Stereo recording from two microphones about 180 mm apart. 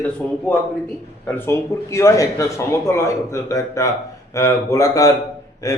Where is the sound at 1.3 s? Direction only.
15° left (ahead or behind).